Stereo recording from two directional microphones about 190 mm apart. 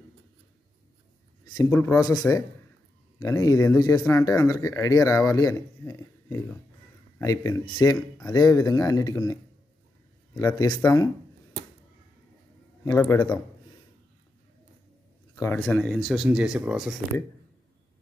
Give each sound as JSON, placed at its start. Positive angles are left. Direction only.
{"t": 1.5, "sound": "speech", "side_deg": 15}
{"t": 12.8, "sound": "speech", "side_deg": 15}
{"t": 15.3, "sound": "speech", "side_deg": 15}